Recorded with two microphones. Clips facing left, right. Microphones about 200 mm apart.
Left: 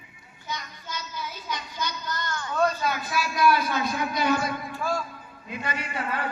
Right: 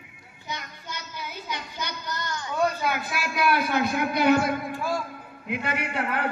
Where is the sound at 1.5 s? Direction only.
60° right (ahead or behind).